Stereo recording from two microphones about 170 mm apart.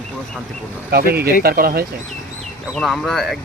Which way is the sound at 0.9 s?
65° right (ahead or behind).